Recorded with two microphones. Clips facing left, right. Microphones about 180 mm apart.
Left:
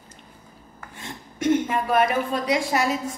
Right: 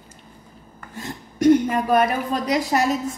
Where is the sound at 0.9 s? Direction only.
40° right (ahead or behind).